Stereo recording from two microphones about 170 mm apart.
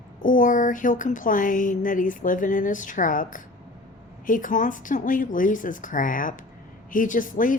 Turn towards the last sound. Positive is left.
turn(degrees=50)  # may be behind; listen again after turning